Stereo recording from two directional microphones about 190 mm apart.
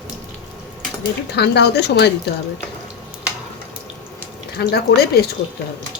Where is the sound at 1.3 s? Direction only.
60° left (ahead or behind).